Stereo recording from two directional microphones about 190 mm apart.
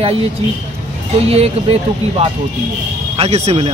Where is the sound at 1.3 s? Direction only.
30° right (ahead or behind).